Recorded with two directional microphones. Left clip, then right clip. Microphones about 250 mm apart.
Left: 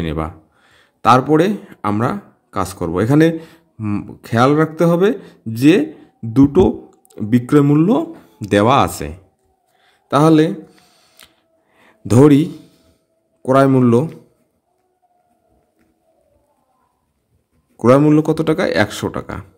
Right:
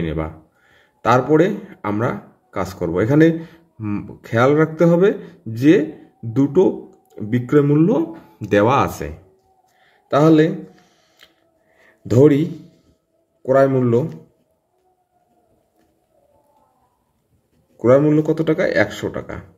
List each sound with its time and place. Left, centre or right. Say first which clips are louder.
0.0 s speech: left 2 dB; left
9.8 s a sound: left 2 dB; left
13.4 s speech: left 2 dB; left
17.7 s speech: left 2 dB; left